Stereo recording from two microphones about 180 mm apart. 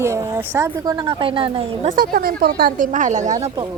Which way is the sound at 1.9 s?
55° right (ahead or behind).